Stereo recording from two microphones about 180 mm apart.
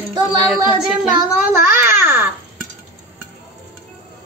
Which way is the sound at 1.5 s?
15° right (ahead or behind).